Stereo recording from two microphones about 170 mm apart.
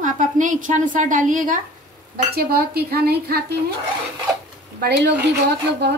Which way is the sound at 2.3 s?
65° right (ahead or behind).